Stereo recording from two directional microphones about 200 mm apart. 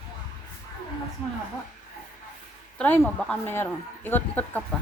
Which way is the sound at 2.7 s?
10° left (ahead or behind).